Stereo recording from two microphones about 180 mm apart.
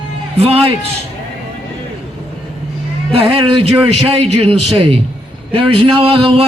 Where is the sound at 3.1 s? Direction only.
35° right (ahead or behind).